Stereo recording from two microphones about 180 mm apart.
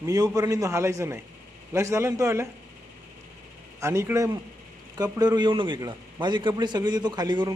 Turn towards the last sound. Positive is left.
turn(degrees=-25)  # may be behind; listen again after turning